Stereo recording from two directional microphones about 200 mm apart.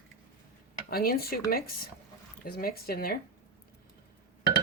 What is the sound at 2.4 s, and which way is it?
Speech, 50° left (ahead or behind).